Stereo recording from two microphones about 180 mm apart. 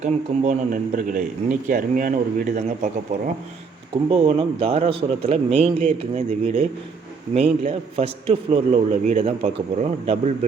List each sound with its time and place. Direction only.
0.0 s speech: 40° right (ahead or behind)
3.9 s a man's voice: 30° right (ahead or behind)